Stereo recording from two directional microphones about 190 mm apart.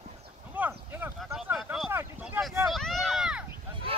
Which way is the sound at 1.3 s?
5° right (ahead or behind).